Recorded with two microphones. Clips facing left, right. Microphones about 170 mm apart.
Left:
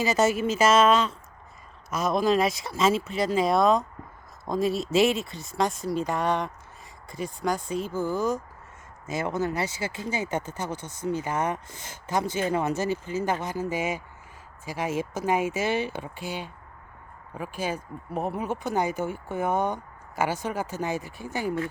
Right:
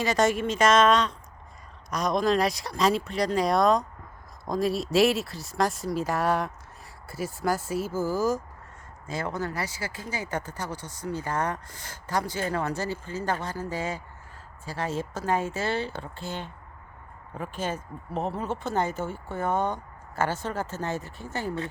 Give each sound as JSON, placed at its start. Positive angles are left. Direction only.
{"t": 0.0, "sound": "speech", "side_deg": 5}
{"t": 9.0, "sound": "speech", "side_deg": 20}